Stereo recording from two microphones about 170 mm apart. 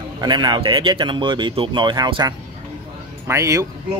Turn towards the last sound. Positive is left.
turn(degrees=-20)  # may be behind; listen again after turning